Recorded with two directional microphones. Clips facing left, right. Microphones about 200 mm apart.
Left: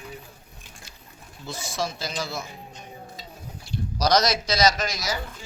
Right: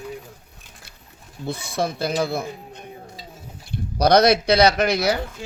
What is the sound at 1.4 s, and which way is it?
Speech, 60° right (ahead or behind).